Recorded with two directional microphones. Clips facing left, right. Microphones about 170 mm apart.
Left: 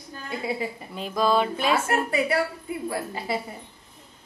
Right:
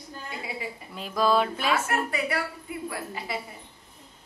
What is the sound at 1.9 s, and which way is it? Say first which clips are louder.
A woman's voice: left 4 dB; 30° left (ahead or behind).